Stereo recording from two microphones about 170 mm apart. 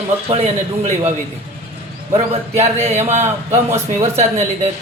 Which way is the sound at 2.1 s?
40° right (ahead or behind).